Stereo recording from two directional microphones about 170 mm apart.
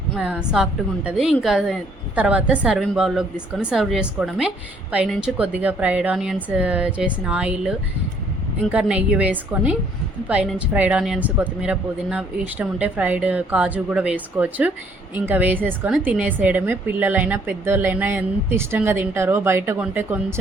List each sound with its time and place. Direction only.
0.1 s a woman's voice: 5° right (ahead or behind)